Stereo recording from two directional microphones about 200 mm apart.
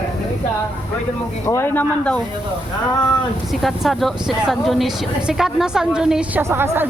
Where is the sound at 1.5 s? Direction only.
10° left (ahead or behind).